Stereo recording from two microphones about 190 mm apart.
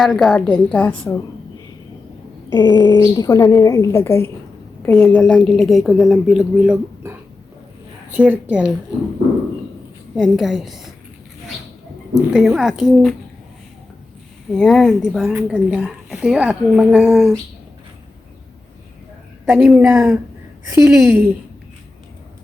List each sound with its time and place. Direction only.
0.0 s a woman's voice: centre (ahead or behind)
2.5 s a woman's voice: 20° left (ahead or behind); by 6.7 s centre (ahead or behind)
8.1 s speech: 5° right (ahead or behind)
10.2 s speech: centre (ahead or behind)
12.3 s speech: 5° right (ahead or behind)
14.5 s speech: centre (ahead or behind)
19.5 s speech: centre (ahead or behind)
20.7 s speech: 15° right (ahead or behind)